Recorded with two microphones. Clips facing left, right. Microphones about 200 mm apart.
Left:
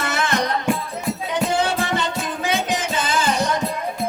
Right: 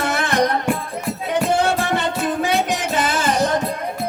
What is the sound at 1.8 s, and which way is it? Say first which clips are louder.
Music: right 3 dB; 65° right (ahead or behind).